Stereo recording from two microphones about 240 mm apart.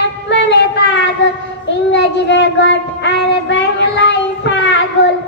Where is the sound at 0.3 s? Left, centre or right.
Left.